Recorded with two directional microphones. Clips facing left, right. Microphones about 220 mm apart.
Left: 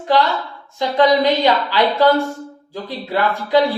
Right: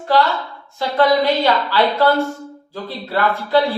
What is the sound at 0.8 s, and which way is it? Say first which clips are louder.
Speech: left 1 dB; 15° left (ahead or behind).